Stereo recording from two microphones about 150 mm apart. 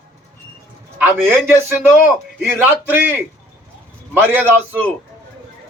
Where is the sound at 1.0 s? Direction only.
15° right (ahead or behind).